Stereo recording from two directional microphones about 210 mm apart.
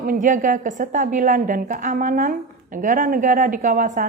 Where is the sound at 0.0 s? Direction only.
40° right (ahead or behind).